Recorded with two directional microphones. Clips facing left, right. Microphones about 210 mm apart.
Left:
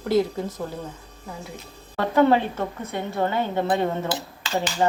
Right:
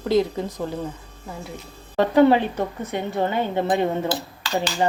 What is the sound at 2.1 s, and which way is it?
Speech, 15° right (ahead or behind).